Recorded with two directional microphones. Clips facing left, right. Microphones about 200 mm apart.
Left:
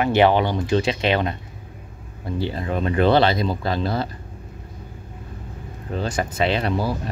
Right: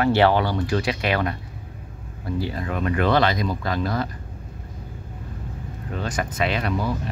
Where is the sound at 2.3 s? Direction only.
25° left (ahead or behind).